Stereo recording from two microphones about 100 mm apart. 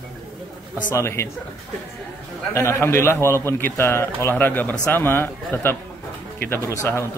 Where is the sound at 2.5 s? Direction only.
30° left (ahead or behind).